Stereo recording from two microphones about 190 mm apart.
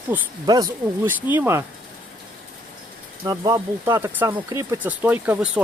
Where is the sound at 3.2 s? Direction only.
20° right (ahead or behind).